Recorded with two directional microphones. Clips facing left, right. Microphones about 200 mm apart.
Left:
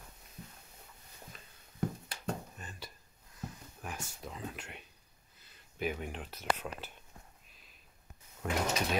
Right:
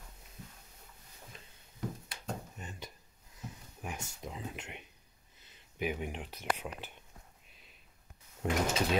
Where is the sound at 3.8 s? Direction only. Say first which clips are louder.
Right 1 dB; 20° right (ahead or behind).